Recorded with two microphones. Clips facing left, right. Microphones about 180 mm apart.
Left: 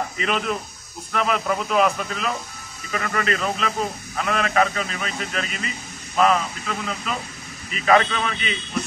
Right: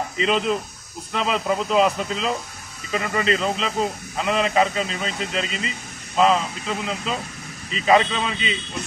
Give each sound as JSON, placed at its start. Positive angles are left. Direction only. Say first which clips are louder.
{"t": 0.2, "sound": "a man's voice", "louder": "right 5 dB", "side_deg": -25}